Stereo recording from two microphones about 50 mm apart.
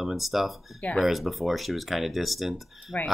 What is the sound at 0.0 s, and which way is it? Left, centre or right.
Speech, centre.